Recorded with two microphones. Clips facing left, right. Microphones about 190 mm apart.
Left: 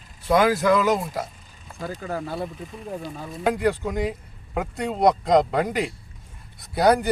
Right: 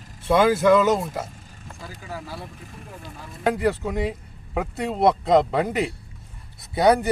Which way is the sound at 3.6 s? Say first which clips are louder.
Even; centre (ahead or behind).